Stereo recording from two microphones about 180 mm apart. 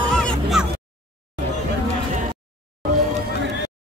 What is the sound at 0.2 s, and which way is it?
Music, centre (ahead or behind).